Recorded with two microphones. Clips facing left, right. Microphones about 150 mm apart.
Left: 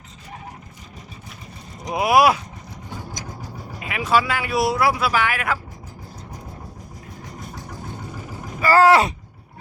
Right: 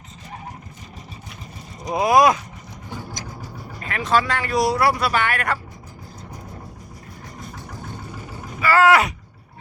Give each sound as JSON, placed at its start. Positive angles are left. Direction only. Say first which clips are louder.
{"t": 1.9, "sound": "speech", "louder": "right 1 dB", "side_deg": 5}
{"t": 3.8, "sound": "speech", "louder": "even", "side_deg": 10}
{"t": 8.6, "sound": "speech", "louder": "left 2 dB", "side_deg": 35}